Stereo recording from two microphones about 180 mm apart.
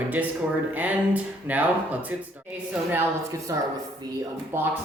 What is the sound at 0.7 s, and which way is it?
Speech, 10° right (ahead or behind).